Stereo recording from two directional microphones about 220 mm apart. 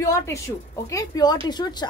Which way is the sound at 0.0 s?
15° left (ahead or behind).